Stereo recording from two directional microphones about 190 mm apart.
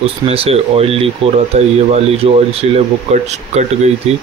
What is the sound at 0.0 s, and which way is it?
Speech, 30° right (ahead or behind).